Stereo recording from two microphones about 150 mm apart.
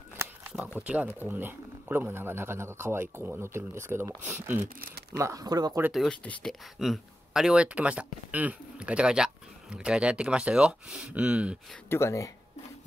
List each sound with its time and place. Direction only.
0.2 s a sound: 15° right (ahead or behind)
0.7 s speech: 10° right (ahead or behind)
4.7 s speech: 80° right
5.1 s speech: 20° right (ahead or behind)
5.8 s speech: 5° right (ahead or behind)
6.0 s speech: 5° left (ahead or behind)
11.9 s speech: 20° left (ahead or behind)